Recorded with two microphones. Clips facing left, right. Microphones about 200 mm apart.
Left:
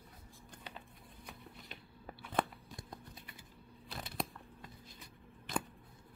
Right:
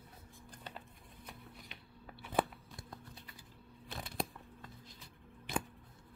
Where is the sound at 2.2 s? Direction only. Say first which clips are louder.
Right 2 dB; 5° right (ahead or behind).